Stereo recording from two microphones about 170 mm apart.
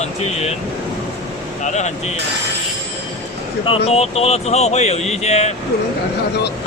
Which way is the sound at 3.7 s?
35° left (ahead or behind).